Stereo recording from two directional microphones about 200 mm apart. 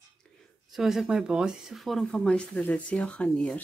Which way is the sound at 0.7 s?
Centre (ahead or behind).